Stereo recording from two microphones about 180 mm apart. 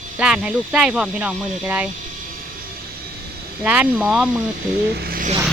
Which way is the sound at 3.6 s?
5° right (ahead or behind).